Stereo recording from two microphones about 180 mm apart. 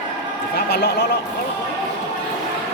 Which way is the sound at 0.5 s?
65° left (ahead or behind).